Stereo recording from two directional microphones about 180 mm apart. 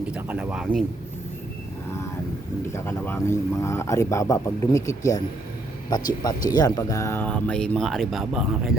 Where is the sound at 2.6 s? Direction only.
15° left (ahead or behind).